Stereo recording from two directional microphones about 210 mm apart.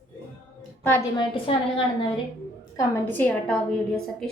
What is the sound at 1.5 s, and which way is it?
Speech, 25° left (ahead or behind).